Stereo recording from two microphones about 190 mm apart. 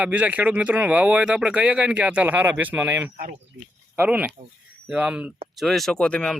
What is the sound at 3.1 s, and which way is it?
Speech, 45° right (ahead or behind).